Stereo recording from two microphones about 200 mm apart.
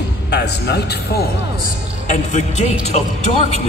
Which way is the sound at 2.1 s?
35° left (ahead or behind).